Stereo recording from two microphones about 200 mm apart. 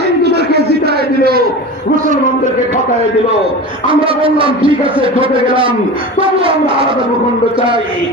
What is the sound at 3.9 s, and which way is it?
A man's voice, 25° right (ahead or behind).